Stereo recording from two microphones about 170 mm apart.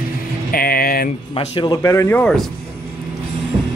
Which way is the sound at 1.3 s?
30° left (ahead or behind).